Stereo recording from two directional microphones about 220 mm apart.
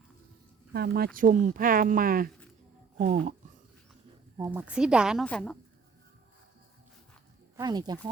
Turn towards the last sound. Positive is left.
turn(degrees=-20)  # may be behind; listen again after turning